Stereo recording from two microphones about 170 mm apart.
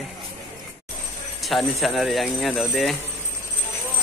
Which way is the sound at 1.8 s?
Centre (ahead or behind).